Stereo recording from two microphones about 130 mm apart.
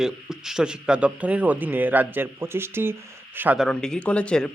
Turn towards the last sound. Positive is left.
turn(degrees=5)  # may be behind; listen again after turning